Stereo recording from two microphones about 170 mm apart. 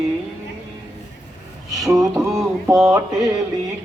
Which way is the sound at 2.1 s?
20° right (ahead or behind).